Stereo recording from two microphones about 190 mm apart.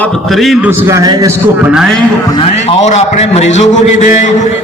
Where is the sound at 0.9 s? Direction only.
15° right (ahead or behind).